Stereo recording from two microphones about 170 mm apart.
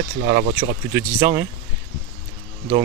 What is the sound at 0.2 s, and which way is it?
Speech, 60° right (ahead or behind).